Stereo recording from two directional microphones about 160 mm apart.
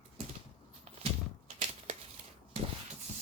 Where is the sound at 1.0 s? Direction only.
40° right (ahead or behind).